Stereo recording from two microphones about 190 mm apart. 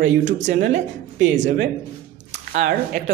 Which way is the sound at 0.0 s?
40° right (ahead or behind).